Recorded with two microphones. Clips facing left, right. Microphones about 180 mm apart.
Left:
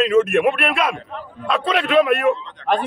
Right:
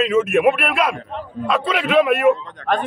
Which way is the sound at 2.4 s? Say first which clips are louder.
Right 2 dB; 45° right (ahead or behind).